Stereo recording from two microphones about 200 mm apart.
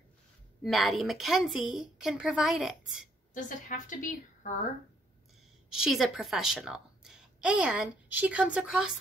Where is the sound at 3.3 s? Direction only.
40° left (ahead or behind).